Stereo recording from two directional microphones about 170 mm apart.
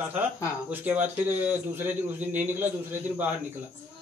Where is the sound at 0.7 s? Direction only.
10° right (ahead or behind).